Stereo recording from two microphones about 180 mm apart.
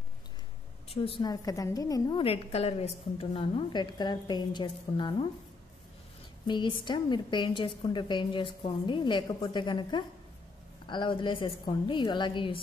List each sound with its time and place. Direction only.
0.8 s a woman's voice: 30° left (ahead or behind)
1.3 s a woman's voice: 20° left (ahead or behind)
6.4 s a woman's voice: 25° left (ahead or behind)